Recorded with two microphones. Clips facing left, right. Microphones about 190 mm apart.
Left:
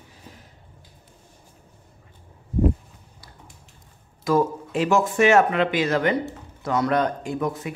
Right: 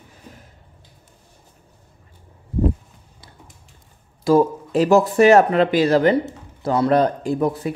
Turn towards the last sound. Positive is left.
turn(degrees=-35)  # may be behind; listen again after turning